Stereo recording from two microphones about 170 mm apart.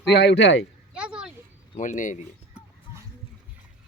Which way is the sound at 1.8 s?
50° left (ahead or behind).